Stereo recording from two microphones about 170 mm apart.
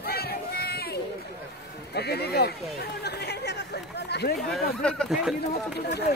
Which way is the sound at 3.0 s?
75° left (ahead or behind).